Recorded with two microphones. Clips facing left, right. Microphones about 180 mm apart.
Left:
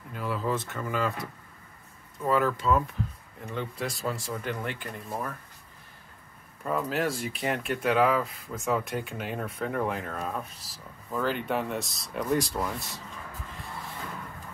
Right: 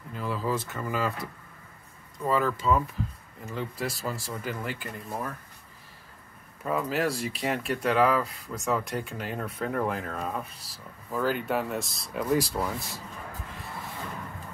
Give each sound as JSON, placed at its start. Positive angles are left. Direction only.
{"t": 0.1, "sound": "speech", "side_deg": 0}
{"t": 6.6, "sound": "speech", "side_deg": 0}